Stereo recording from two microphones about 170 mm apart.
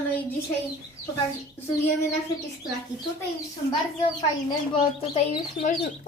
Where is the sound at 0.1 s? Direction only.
10° left (ahead or behind).